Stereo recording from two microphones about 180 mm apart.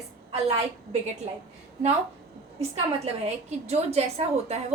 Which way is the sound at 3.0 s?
35° right (ahead or behind).